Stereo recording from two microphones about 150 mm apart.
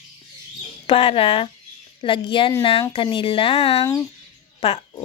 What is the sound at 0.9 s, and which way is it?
Speech, 35° left (ahead or behind).